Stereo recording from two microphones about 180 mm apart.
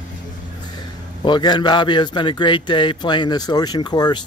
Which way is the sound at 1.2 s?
25° left (ahead or behind).